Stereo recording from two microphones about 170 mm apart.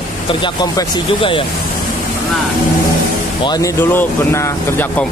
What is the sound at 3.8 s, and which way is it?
Speech, 10° left (ahead or behind).